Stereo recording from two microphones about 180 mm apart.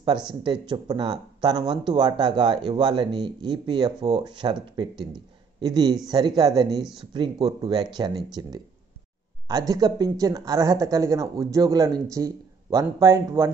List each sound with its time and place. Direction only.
0.3 s speech: 25° right (ahead or behind)